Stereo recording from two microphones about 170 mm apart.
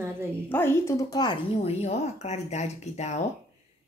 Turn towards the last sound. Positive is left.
turn(degrees=40)  # may be behind; listen again after turning